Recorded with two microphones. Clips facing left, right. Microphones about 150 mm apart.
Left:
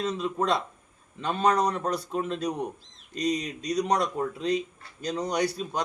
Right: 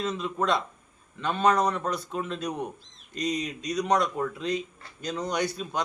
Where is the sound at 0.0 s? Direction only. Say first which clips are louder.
Left 1 dB; 35° left (ahead or behind).